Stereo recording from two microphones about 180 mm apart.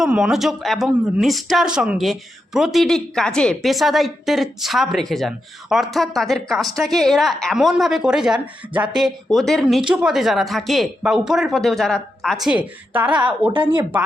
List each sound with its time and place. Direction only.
0.0 s speech: centre (ahead or behind)
13.5 s speech: 25° right (ahead or behind)